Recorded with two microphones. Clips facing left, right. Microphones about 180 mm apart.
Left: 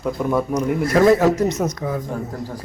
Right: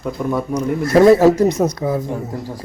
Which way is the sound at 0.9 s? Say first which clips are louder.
Right 5 dB; 30° right (ahead or behind).